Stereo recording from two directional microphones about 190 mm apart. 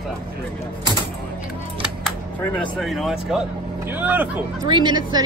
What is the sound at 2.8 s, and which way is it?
Speech, centre (ahead or behind).